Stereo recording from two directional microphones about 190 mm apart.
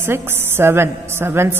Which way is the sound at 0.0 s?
10° right (ahead or behind).